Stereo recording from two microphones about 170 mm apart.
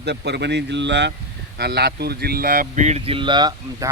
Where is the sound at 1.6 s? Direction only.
75° right (ahead or behind); by 3.9 s 25° right (ahead or behind).